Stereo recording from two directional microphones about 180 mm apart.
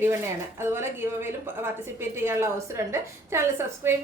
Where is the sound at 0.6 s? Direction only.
15° right (ahead or behind).